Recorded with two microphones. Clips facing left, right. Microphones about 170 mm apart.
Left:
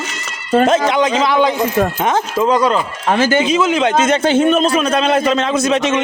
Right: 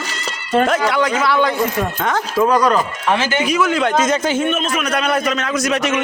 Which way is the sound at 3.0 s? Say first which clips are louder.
Left 6 dB; 40° left (ahead or behind).